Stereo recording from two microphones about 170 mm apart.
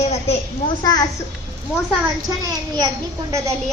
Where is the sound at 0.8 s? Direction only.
20° left (ahead or behind).